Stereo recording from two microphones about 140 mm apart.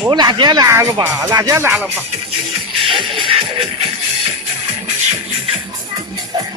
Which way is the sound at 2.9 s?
35° right (ahead or behind).